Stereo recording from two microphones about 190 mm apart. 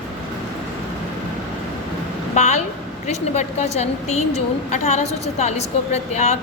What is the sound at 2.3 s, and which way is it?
A woman's voice, 35° left (ahead or behind).